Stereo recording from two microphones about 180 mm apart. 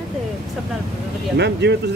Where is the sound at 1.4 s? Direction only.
70° right (ahead or behind).